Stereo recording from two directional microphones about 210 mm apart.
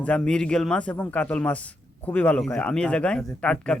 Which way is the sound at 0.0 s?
5° left (ahead or behind).